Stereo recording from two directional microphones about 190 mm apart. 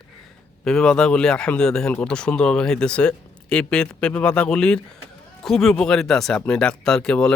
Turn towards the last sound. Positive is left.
turn(degrees=5)  # may be behind; listen again after turning